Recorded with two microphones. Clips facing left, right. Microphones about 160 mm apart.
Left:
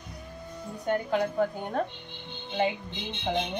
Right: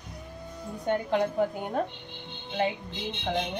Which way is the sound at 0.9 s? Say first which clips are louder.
Right 1 dB; 20° right (ahead or behind).